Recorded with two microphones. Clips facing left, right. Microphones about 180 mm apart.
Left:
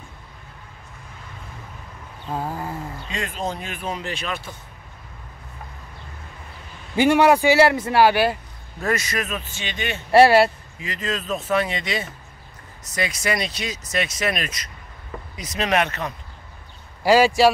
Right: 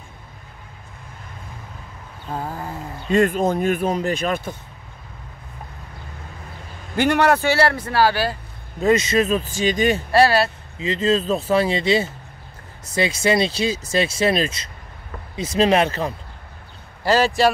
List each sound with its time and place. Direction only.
2.3 s a sound: 5° left (ahead or behind)
3.1 s speech: 50° right (ahead or behind)
7.0 s a man's voice: 5° left (ahead or behind)
8.8 s speech: 20° right (ahead or behind); by 10.0 s 40° right (ahead or behind)
10.1 s speech: 25° left (ahead or behind)
10.8 s speech: 25° right (ahead or behind)
17.0 s a man's voice: 10° left (ahead or behind)